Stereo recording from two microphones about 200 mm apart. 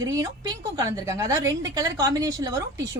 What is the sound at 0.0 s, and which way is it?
A woman's voice, 15° right (ahead or behind).